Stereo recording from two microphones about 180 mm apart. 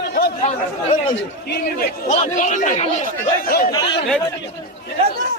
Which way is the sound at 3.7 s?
25° left (ahead or behind).